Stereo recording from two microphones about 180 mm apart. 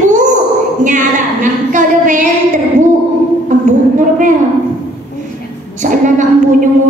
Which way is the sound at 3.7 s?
45° right (ahead or behind).